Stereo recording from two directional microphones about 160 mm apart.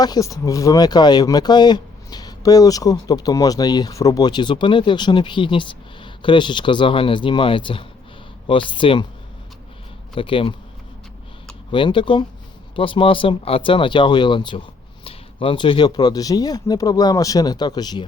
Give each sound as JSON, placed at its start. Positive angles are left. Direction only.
{"t": 0.0, "sound": "speech", "side_deg": 20}
{"t": 10.2, "sound": "speech", "side_deg": 35}
{"t": 11.7, "sound": "speech", "side_deg": 30}